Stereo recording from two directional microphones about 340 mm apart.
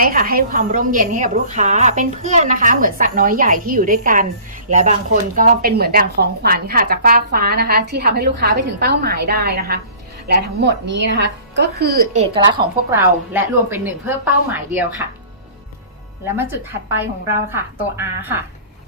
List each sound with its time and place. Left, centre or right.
0.0 s a woman's voice: right; by 14.8 s centre
16.9 s a woman's voice: centre